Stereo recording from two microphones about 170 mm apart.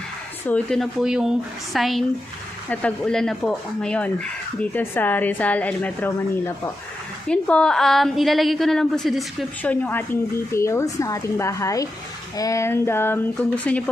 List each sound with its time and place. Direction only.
0.5 s a woman's voice: 5° left (ahead or behind)
9.6 s speech: 10° left (ahead or behind)